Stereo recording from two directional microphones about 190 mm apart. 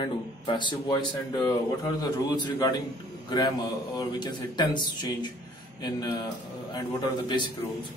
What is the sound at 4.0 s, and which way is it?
Speech, 20° left (ahead or behind).